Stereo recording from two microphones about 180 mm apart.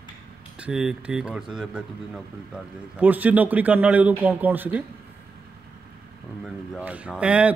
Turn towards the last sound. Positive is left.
turn(degrees=-5)  # may be behind; listen again after turning